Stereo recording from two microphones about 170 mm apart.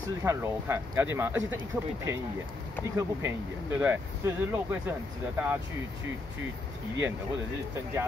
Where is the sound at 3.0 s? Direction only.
15° right (ahead or behind).